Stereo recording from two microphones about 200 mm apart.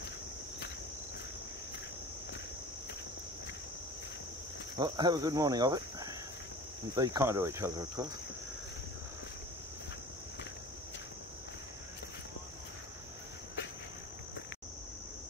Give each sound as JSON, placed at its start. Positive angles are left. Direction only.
{"t": 4.7, "sound": "speech", "side_deg": -20}